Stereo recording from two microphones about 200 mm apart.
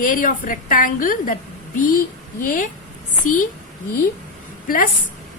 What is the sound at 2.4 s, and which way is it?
Speech, 45° left (ahead or behind).